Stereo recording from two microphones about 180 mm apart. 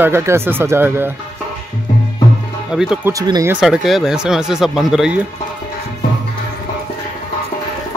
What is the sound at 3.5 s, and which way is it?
Speech, 5° right (ahead or behind).